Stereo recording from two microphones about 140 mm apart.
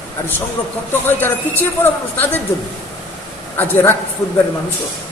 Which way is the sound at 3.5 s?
15° left (ahead or behind).